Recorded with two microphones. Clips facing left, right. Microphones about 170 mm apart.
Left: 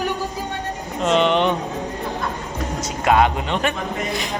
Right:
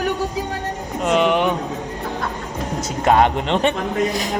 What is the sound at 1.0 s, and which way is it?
Speech, 10° right (ahead or behind).